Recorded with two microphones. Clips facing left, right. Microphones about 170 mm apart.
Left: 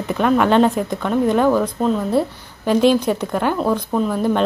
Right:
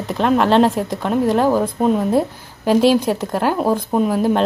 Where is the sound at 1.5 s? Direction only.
15° right (ahead or behind).